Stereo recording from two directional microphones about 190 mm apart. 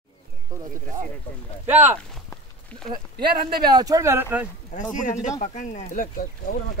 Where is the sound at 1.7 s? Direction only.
10° right (ahead or behind).